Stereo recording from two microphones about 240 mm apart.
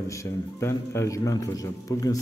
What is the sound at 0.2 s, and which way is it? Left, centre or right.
A man's voice, centre.